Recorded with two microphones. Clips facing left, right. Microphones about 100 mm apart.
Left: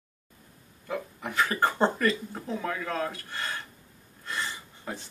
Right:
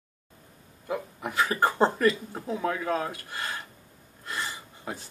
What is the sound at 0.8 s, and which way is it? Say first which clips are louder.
Speech: right 2 dB; 15° right (ahead or behind).